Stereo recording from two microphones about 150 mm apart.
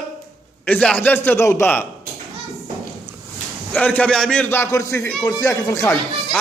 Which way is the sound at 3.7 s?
10° left (ahead or behind).